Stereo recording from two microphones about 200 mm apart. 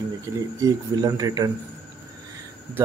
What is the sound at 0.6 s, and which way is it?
Speech, 20° right (ahead or behind).